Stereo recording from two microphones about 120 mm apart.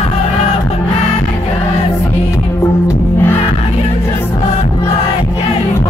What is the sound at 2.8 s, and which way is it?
Music, 20° left (ahead or behind).